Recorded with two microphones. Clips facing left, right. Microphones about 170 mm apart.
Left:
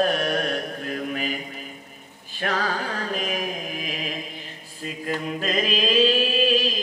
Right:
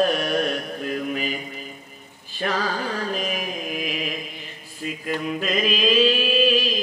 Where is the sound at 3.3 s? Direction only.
40° left (ahead or behind).